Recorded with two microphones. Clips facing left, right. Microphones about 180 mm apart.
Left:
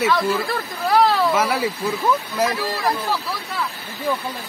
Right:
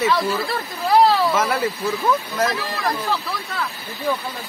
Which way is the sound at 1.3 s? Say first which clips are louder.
Even; 10° left (ahead or behind).